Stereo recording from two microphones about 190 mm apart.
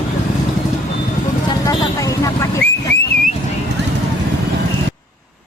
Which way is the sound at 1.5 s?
20° left (ahead or behind).